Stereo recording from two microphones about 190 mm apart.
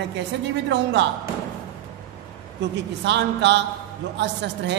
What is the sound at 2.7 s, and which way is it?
A woman's voice, 65° right (ahead or behind).